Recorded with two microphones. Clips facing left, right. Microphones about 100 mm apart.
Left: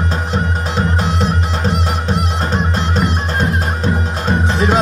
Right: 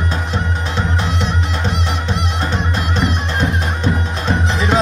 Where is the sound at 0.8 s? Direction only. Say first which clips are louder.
Left 4 dB; 40° left (ahead or behind).